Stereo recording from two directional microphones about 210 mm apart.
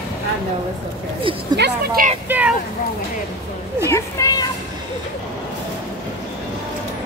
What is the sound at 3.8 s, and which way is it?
Speech, 15° left (ahead or behind).